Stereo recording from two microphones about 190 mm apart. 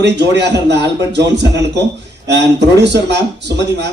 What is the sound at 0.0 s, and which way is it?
A man's voice, 65° right (ahead or behind).